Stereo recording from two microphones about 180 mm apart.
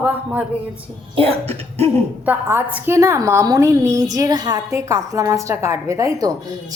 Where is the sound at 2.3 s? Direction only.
10° right (ahead or behind).